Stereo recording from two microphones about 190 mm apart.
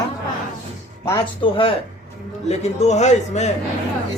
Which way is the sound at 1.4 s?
30° left (ahead or behind).